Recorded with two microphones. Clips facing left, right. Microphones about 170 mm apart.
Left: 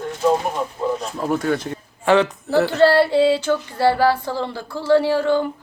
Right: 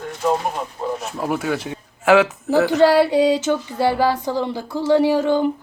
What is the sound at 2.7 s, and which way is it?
Female singing, 15° right (ahead or behind).